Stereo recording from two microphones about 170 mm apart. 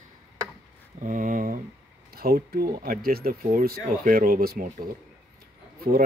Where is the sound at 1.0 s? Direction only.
50° right (ahead or behind).